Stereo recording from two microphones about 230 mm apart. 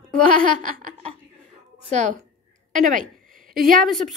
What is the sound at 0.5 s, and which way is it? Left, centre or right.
Laughter, right.